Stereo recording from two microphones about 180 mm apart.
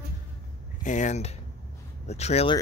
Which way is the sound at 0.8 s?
45° left (ahead or behind).